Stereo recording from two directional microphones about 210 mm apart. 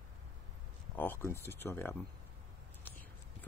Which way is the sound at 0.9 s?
10° left (ahead or behind).